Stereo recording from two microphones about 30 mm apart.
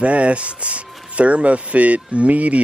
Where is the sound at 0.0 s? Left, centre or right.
Right.